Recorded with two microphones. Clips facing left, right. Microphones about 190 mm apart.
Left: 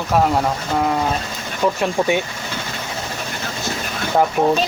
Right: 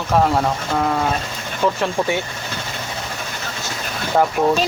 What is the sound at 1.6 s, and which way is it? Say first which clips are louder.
Speech: left 1 dB; 15° left (ahead or behind).